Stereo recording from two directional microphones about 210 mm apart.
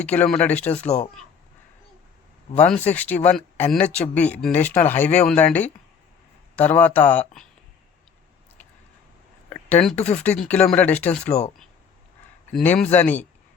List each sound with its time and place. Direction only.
0.0 s speech: 5° left (ahead or behind)
2.6 s speech: 5° left (ahead or behind)
9.5 s a sound: 10° left (ahead or behind)
10.2 s speech: 5° left (ahead or behind)
11.3 s speech: 30° left (ahead or behind)
12.5 s speech: 5° left (ahead or behind)